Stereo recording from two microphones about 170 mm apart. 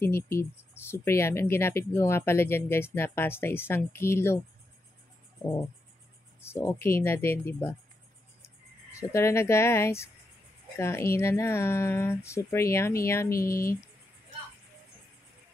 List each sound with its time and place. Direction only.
0.0 s speech: 15° left (ahead or behind)
6.4 s speech: 15° left (ahead or behind)
9.1 s speech: 15° left (ahead or behind)